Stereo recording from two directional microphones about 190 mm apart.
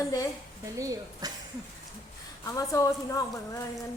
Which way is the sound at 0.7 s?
15° right (ahead or behind).